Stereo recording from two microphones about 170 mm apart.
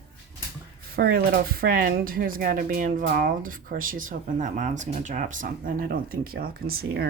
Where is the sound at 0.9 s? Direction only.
70° right (ahead or behind).